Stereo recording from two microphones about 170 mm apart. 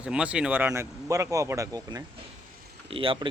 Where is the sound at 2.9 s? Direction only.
30° right (ahead or behind).